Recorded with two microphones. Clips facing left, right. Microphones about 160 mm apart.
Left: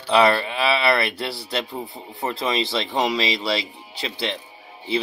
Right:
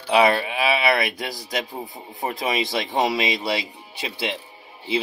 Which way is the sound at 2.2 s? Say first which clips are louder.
Left 1 dB; 15° right (ahead or behind).